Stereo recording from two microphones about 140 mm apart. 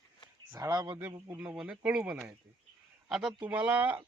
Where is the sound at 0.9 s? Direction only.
15° right (ahead or behind).